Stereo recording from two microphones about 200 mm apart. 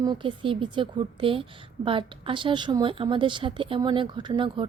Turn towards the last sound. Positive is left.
turn(degrees=-25)  # may be behind; listen again after turning